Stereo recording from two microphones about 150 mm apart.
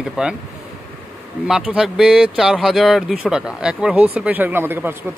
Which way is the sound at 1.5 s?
5° right (ahead or behind).